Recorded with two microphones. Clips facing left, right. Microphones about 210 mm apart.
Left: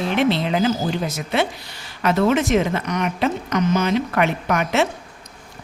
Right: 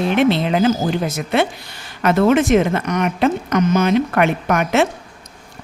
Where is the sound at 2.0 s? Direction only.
50° right (ahead or behind).